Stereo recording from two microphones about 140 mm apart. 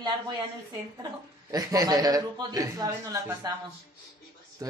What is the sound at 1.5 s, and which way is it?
Speech, 25° right (ahead or behind).